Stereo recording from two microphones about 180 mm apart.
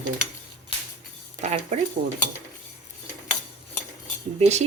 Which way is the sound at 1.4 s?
40° right (ahead or behind).